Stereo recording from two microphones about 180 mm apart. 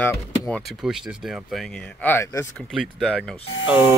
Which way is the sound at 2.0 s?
15° left (ahead or behind).